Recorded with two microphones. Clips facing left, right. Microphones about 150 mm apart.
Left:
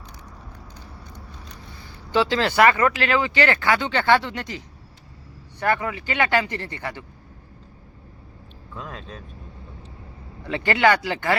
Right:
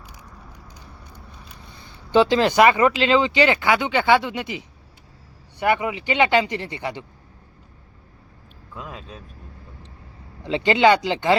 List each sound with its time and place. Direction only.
0.7 s vehicle: 10° right (ahead or behind)
2.1 s speech: 20° right (ahead or behind)
8.7 s speech: 5° right (ahead or behind)
10.4 s speech: 20° right (ahead or behind)